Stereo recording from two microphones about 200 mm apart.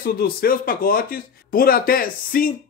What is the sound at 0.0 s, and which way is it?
Speech, 50° left (ahead or behind).